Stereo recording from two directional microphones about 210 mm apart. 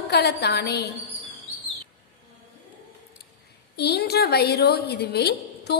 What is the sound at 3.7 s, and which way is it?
A woman's voice, 50° left (ahead or behind).